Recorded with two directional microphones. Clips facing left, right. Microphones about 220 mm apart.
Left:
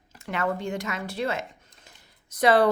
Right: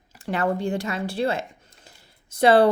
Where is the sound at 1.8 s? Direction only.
30° right (ahead or behind).